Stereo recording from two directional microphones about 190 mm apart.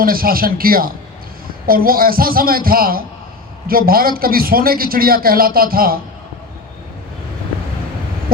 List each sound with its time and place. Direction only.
0.0 s a man's voice: 50° right (ahead or behind)